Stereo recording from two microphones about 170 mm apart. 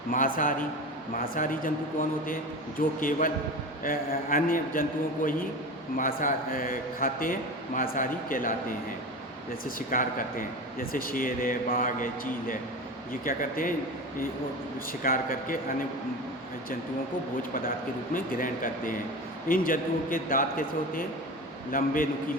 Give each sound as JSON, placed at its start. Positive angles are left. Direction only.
{"t": 1.1, "sound": "a man's voice", "side_deg": 55}
{"t": 9.6, "sound": "a man's voice", "side_deg": 55}
{"t": 15.0, "sound": "a man's voice", "side_deg": 55}
{"t": 18.1, "sound": "a man's voice", "side_deg": 55}